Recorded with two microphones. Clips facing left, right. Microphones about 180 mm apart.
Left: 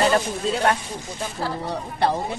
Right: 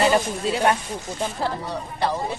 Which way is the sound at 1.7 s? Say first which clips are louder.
Left 2 dB; 60° left (ahead or behind).